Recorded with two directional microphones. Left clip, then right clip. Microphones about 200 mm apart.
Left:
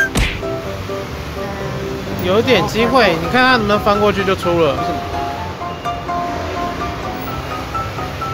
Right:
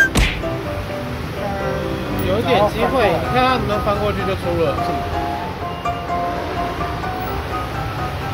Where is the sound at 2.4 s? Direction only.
35° left (ahead or behind).